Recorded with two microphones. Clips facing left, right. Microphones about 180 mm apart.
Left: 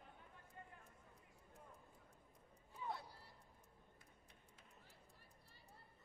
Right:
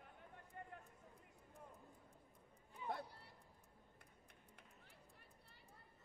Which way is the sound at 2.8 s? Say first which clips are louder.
Right 2 dB; 55° right (ahead or behind).